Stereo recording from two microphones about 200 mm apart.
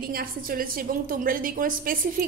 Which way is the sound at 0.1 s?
45° right (ahead or behind).